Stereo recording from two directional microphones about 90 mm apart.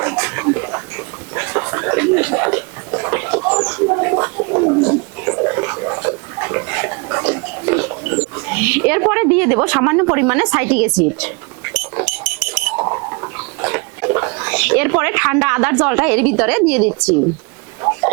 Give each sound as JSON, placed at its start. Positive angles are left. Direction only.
{"t": 0.0, "sound": "a sound", "side_deg": -25}
{"t": 1.4, "sound": "chuckle", "side_deg": -25}
{"t": 3.8, "sound": "gargling", "side_deg": -25}
{"t": 12.7, "sound": "pig", "side_deg": -25}